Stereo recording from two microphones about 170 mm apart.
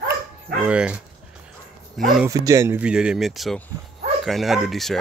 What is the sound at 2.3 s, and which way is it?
Speech, 20° right (ahead or behind).